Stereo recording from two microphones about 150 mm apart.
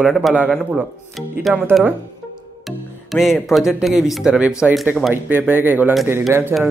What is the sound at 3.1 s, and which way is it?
A man's voice, centre (ahead or behind).